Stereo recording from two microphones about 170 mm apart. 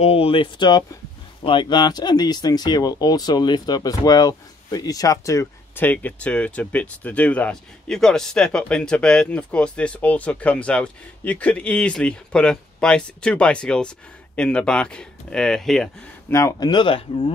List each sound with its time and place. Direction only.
0.0 s speech: 35° left (ahead or behind); by 15.9 s centre (ahead or behind)
16.3 s speech: 20° left (ahead or behind)